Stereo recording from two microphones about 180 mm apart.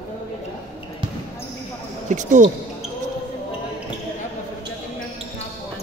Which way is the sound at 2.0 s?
45° right (ahead or behind).